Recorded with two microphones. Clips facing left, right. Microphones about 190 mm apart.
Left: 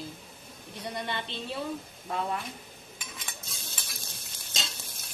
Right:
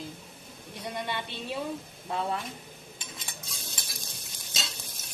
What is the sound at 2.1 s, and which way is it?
Speech, 30° right (ahead or behind).